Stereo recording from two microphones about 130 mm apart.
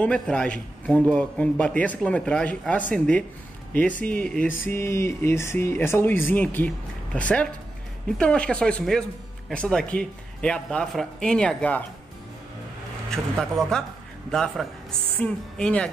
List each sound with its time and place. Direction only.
0.0 s speech: 10° left (ahead or behind)
13.1 s speech: 5° left (ahead or behind)